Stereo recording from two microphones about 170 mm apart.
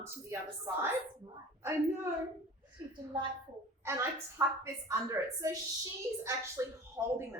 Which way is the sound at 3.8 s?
15° right (ahead or behind).